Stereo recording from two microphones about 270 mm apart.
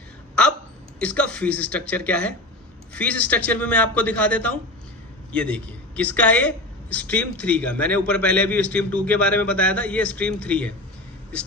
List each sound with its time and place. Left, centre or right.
0.9 s a man's voice: centre